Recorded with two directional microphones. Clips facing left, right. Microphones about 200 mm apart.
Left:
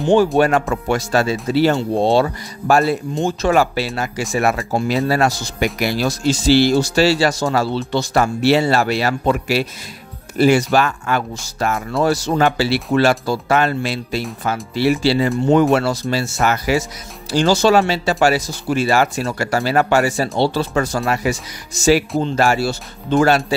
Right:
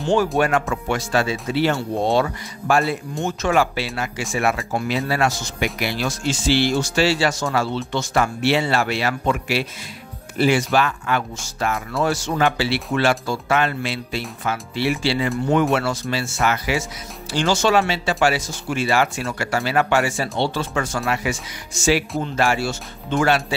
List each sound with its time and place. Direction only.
0.4 s speech: 35° left (ahead or behind)